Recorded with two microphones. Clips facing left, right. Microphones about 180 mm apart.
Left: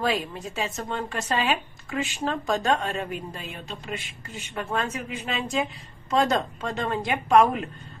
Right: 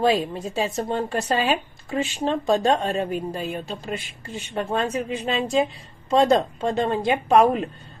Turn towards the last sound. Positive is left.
turn(degrees=-35)  # may be behind; listen again after turning